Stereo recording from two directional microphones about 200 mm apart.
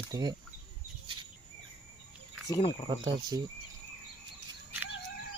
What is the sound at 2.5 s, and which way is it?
Speech, 25° left (ahead or behind).